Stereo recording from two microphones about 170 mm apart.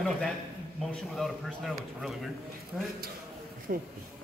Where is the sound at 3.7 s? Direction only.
65° right (ahead or behind).